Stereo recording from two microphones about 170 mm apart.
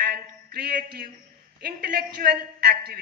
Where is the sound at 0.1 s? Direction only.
70° right (ahead or behind).